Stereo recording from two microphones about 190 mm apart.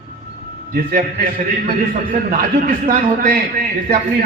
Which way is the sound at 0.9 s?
50° right (ahead or behind).